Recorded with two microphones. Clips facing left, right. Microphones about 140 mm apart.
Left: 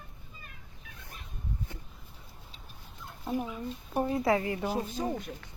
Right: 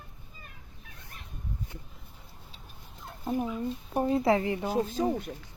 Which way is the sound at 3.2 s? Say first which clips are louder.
Right 2 dB; 20° right (ahead or behind).